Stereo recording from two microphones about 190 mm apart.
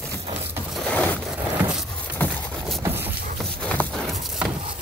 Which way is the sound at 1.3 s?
10° right (ahead or behind).